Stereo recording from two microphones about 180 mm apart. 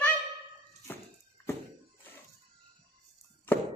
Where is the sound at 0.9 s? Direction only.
10° left (ahead or behind).